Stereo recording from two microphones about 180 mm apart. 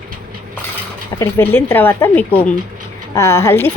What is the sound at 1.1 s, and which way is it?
Speech, 15° left (ahead or behind).